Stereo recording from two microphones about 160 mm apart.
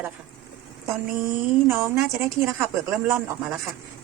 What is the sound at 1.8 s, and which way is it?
Speech, 15° right (ahead or behind).